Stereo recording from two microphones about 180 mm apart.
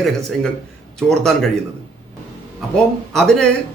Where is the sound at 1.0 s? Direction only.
5° left (ahead or behind).